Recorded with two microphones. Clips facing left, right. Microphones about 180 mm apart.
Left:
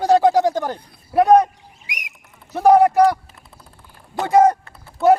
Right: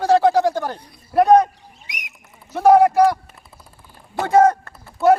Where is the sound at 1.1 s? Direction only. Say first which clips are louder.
Even; 5° left (ahead or behind).